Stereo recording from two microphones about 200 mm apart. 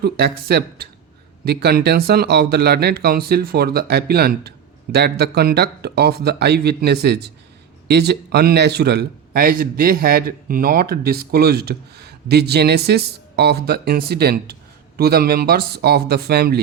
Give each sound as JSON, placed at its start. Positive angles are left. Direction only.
{"t": 0.0, "sound": "a man's voice", "side_deg": -50}